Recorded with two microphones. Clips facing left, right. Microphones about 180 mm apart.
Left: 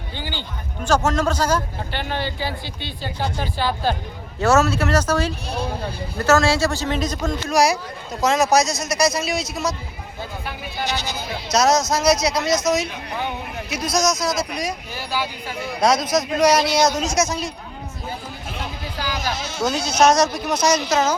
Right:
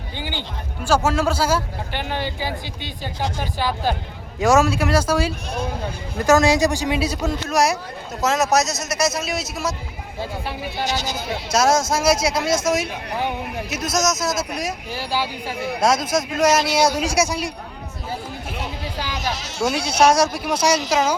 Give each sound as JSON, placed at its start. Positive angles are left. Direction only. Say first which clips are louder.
{"t": 0.2, "sound": "a man's voice", "louder": "right 2 dB", "side_deg": -15}
{"t": 10.2, "sound": "speech", "louder": "right 4 dB", "side_deg": -30}
{"t": 10.8, "sound": "speech", "louder": "right 1 dB", "side_deg": -45}
{"t": 11.5, "sound": "a man's voice", "louder": "even", "side_deg": -5}
{"t": 13.7, "sound": "speech", "louder": "left 2 dB", "side_deg": 0}
{"t": 14.9, "sound": "speech", "louder": "right 2 dB", "side_deg": -30}
{"t": 15.8, "sound": "a man's voice", "louder": "left 1 dB", "side_deg": -5}
{"t": 19.6, "sound": "a man's voice", "louder": "even", "side_deg": -10}